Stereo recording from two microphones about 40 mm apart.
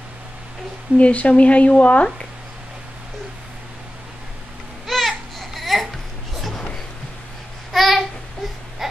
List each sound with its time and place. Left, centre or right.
0.9 s speech: left
4.8 s a sound: centre
7.7 s babbling: centre